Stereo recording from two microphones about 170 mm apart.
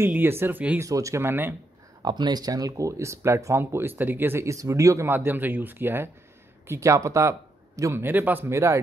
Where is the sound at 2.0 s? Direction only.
25° right (ahead or behind).